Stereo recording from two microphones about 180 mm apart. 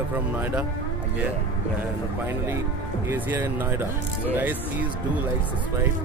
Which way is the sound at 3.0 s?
10° right (ahead or behind).